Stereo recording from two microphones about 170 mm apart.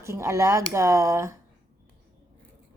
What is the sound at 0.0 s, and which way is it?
A woman's voice, 15° right (ahead or behind).